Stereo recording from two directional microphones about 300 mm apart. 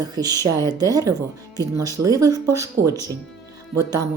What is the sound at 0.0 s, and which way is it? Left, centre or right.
Speech, centre.